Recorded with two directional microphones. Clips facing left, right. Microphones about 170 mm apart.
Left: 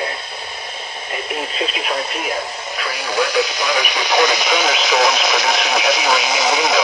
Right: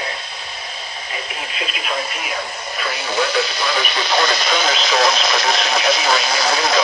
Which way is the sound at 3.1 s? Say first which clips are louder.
Left 2 dB; 15° left (ahead or behind).